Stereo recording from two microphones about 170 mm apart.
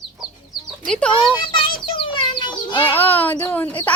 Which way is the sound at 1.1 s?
30° left (ahead or behind).